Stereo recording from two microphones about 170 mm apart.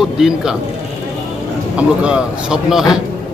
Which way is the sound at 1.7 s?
5° right (ahead or behind).